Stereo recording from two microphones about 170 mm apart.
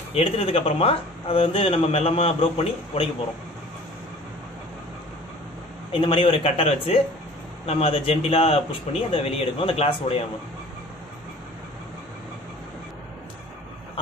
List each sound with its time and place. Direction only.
0.1 s speech: 35° left (ahead or behind)
5.9 s speech: 30° left (ahead or behind)